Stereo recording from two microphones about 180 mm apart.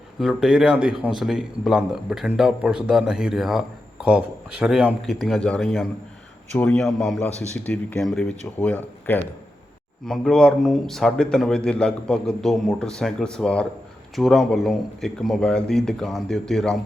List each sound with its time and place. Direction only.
0.2 s a man's voice: 5° right (ahead or behind)